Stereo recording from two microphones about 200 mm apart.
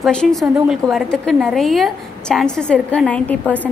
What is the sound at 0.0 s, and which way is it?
A woman's voice, 5° left (ahead or behind).